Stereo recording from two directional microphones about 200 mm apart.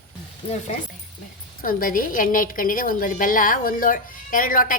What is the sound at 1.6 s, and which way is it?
A woman's voice, 45° left (ahead or behind).